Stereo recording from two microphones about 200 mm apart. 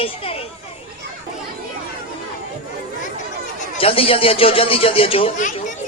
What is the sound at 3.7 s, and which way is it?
Speech, 30° left (ahead or behind).